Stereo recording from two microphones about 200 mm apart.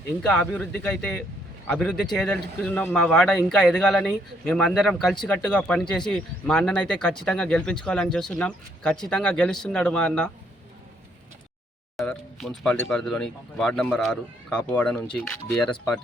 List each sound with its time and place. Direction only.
0.2 s speech: 5° left (ahead or behind)
11.9 s speech: centre (ahead or behind)